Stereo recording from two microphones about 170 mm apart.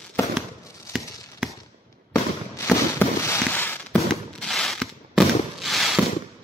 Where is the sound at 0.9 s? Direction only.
15° left (ahead or behind).